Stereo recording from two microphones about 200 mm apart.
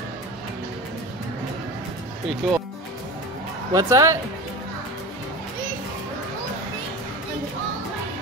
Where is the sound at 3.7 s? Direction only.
15° right (ahead or behind).